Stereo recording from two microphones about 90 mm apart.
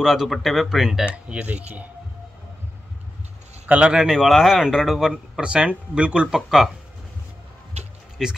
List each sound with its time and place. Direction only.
0.0 s speech: 5° right (ahead or behind)
3.6 s a man's voice: 15° right (ahead or behind)